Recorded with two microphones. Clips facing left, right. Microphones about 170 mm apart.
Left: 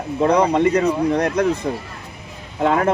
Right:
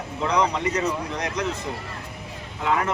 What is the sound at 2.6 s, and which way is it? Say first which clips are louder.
Speech: left 6 dB; 50° left (ahead or behind).